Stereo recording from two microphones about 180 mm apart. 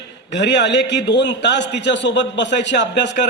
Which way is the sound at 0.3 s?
75° left (ahead or behind).